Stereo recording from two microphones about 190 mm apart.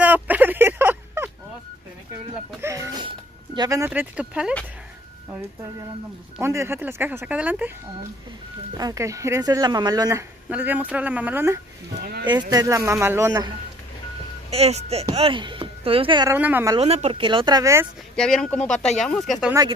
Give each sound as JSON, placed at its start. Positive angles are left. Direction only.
{"t": 0.0, "sound": "a sound", "side_deg": -10}
{"t": 2.6, "sound": "a sound", "side_deg": -15}
{"t": 6.4, "sound": "speech", "side_deg": -15}
{"t": 8.7, "sound": "speech", "side_deg": -20}
{"t": 12.3, "sound": "speech", "side_deg": -20}
{"t": 14.5, "sound": "speech", "side_deg": -35}
{"t": 16.3, "sound": "speech", "side_deg": -10}
{"t": 16.7, "sound": "speech", "side_deg": -35}
{"t": 18.1, "sound": "speech", "side_deg": 5}